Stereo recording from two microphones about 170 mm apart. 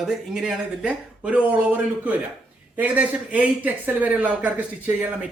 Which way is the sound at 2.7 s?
10° right (ahead or behind).